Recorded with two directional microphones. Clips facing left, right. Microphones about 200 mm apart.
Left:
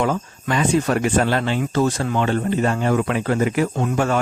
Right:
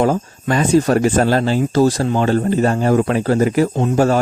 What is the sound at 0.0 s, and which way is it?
Speech, 40° right (ahead or behind).